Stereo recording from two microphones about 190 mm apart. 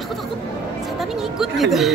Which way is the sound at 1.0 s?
Centre (ahead or behind).